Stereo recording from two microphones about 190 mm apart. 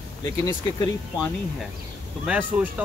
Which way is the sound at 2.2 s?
5° right (ahead or behind).